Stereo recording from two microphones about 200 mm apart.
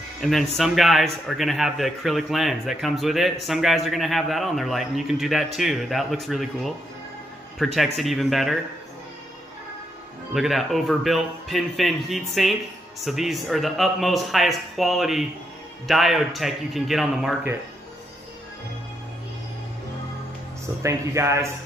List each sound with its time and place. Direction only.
0.2 s a man's voice: centre (ahead or behind)
10.3 s a man's voice: centre (ahead or behind)
20.8 s speech: 15° right (ahead or behind)